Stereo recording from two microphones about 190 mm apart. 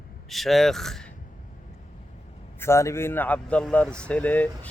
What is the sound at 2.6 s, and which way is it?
Speech, 15° left (ahead or behind).